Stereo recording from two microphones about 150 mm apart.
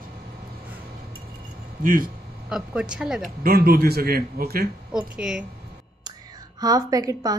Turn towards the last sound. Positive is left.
turn(degrees=-25)  # may be behind; listen again after turning